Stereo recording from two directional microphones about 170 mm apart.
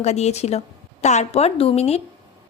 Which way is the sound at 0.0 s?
40° left (ahead or behind).